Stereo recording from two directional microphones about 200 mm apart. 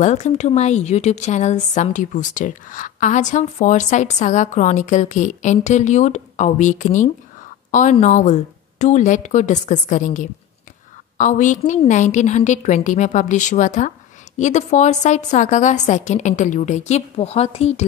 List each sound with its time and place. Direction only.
0.0 s speech: 35° left (ahead or behind)